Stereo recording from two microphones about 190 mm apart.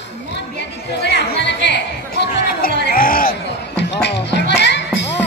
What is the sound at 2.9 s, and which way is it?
Music, 50° left (ahead or behind).